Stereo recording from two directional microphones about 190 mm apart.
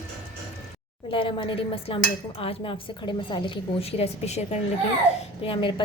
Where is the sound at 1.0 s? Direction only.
25° left (ahead or behind).